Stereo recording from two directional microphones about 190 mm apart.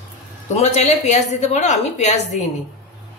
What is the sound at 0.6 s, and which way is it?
A woman's voice, 35° left (ahead or behind).